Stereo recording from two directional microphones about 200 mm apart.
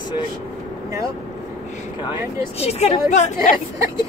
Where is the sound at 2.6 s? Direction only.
30° left (ahead or behind).